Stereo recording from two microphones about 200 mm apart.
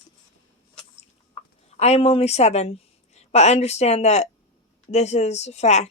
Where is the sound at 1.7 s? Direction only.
30° left (ahead or behind).